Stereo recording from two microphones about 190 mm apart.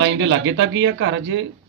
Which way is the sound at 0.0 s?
70° right (ahead or behind).